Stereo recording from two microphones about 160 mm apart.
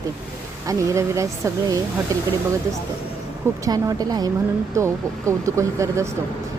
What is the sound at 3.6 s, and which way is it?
A woman's voice, 25° right (ahead or behind).